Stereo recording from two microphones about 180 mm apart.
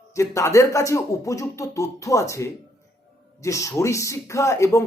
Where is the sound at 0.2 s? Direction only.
15° left (ahead or behind).